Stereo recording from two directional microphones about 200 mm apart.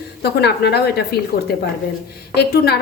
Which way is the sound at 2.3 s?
55° left (ahead or behind).